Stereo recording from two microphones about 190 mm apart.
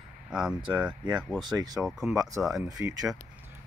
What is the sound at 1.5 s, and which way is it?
Speech, 20° right (ahead or behind).